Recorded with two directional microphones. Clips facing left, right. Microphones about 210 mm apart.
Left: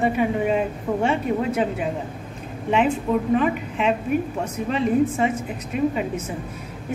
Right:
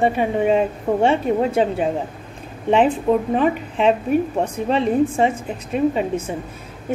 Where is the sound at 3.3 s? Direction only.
30° right (ahead or behind).